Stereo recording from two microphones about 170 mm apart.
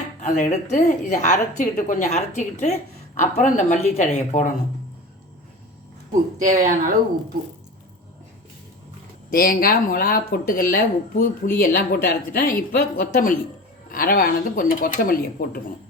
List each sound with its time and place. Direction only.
0.2 s a woman's voice: 50° left (ahead or behind)
6.4 s speech: 50° right (ahead or behind)
9.3 s speech: 60° left (ahead or behind)